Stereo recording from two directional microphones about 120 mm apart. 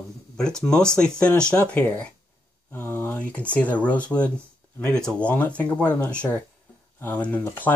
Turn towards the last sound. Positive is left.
turn(degrees=15)  # may be behind; listen again after turning